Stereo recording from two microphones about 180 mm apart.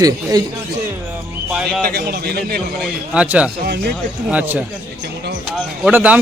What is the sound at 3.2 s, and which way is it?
A man's voice, 5° right (ahead or behind).